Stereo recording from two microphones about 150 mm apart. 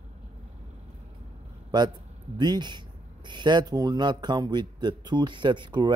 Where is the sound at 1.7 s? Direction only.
30° right (ahead or behind).